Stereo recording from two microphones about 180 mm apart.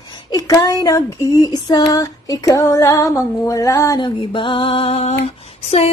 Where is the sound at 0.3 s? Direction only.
20° left (ahead or behind).